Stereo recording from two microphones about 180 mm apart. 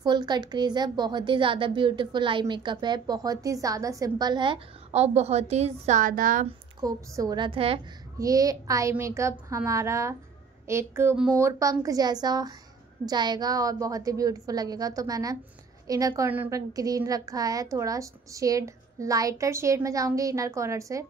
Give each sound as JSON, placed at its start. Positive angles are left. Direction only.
{"t": 0.0, "sound": "a woman's voice", "side_deg": -25}
{"t": 6.8, "sound": "a woman's voice", "side_deg": -20}
{"t": 8.2, "sound": "a woman's voice", "side_deg": -20}